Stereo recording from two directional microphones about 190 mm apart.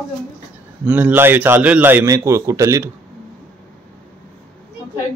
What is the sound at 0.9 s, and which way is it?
Speech, 10° right (ahead or behind).